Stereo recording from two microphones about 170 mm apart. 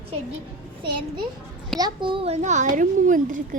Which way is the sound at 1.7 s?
25° right (ahead or behind).